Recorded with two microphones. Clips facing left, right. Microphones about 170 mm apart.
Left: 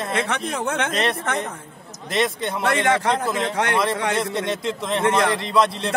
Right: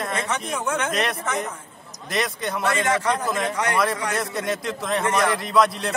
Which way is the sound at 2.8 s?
65° left (ahead or behind).